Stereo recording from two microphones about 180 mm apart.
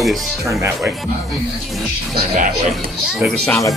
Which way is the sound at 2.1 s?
55° right (ahead or behind).